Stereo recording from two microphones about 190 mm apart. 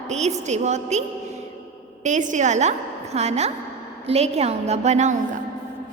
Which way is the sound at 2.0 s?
40° right (ahead or behind).